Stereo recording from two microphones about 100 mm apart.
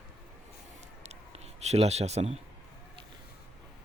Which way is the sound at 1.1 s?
90° right.